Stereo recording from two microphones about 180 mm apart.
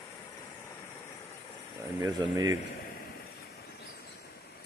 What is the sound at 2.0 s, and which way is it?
Speech, 20° right (ahead or behind).